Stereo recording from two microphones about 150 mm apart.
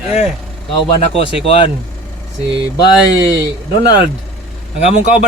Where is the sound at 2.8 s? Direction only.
25° left (ahead or behind).